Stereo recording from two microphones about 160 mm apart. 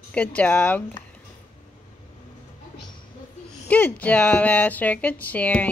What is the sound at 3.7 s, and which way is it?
Speech, 10° left (ahead or behind).